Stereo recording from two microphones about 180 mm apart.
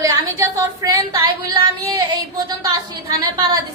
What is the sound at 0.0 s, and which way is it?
A woman's voice, 20° right (ahead or behind).